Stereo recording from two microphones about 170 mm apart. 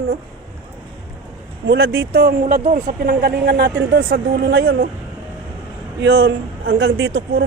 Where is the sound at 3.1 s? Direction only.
65° right (ahead or behind).